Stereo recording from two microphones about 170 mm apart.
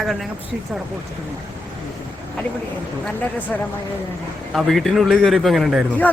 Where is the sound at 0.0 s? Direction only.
Centre (ahead or behind).